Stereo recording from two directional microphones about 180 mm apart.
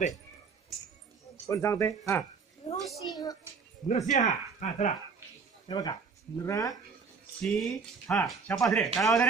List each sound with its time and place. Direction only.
1.3 s speech: 15° left (ahead or behind)
2.6 s a child's voice: 30° left (ahead or behind)
3.8 s speech: 40° left (ahead or behind)
5.7 s speech: 20° left (ahead or behind)
7.3 s speech: centre (ahead or behind)